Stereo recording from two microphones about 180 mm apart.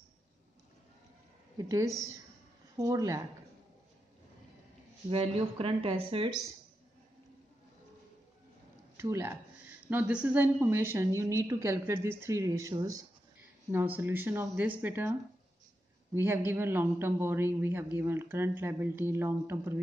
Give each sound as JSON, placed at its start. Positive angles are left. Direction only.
{"t": 1.6, "sound": "a woman's voice", "side_deg": -20}
{"t": 5.1, "sound": "speech", "side_deg": -30}
{"t": 8.9, "sound": "a woman's voice", "side_deg": -15}
{"t": 16.2, "sound": "a woman's voice", "side_deg": -15}